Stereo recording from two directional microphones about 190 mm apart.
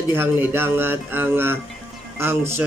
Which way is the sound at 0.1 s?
10° right (ahead or behind).